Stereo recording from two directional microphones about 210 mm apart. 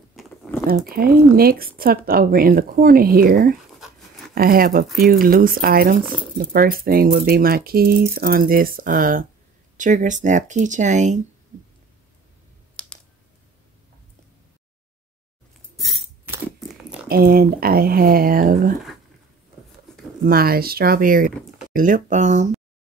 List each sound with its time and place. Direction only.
0.1 s a sound: centre (ahead or behind)
0.8 s speech: 45° right (ahead or behind)
3.7 s dog: centre (ahead or behind)
4.4 s speech: 45° right (ahead or behind)
12.8 s typing: 5° left (ahead or behind)
15.7 s music: centre (ahead or behind)
16.3 s a sound: centre (ahead or behind)
17.1 s speech: 45° right (ahead or behind)
20.2 s speech: 45° right (ahead or behind)